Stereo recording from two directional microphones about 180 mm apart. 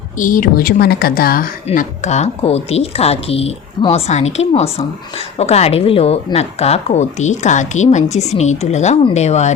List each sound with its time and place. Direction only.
0.2 s a woman's voice: 50° left (ahead or behind)